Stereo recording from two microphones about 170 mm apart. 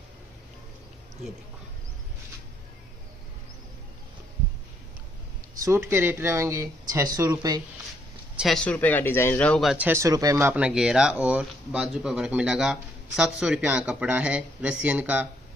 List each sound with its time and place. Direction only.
5.6 s speech: 15° right (ahead or behind)
8.4 s speech: 5° left (ahead or behind)
9.8 s speech: 15° right (ahead or behind)